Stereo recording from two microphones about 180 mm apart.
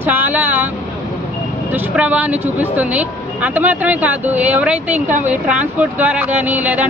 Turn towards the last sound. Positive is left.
turn(degrees=-10)  # may be behind; listen again after turning